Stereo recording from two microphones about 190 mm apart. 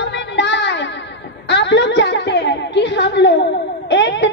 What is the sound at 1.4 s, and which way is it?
Music, 65° left (ahead or behind).